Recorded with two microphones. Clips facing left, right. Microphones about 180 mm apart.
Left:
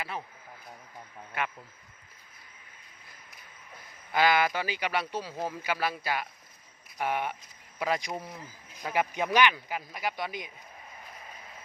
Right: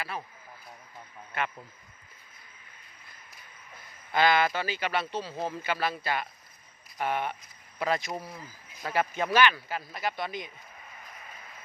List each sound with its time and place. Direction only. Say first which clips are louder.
0.0 s speech: even; 20° left (ahead or behind)
1.3 s speech: right 1 dB; 10° left (ahead or behind)
4.1 s speech: right 1 dB; 10° left (ahead or behind)